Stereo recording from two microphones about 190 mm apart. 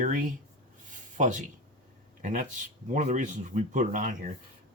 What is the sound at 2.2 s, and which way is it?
Speech, 40° right (ahead or behind).